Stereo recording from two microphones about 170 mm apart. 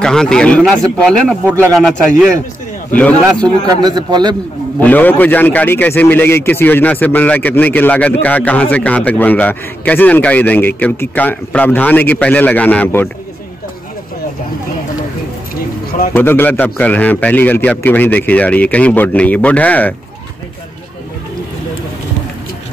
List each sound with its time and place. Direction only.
0.0 s speech: 5° left (ahead or behind)
3.8 s a man's voice: 25° right (ahead or behind)
4.7 s a man's voice: 10° left (ahead or behind)
16.1 s a man's voice: 10° left (ahead or behind)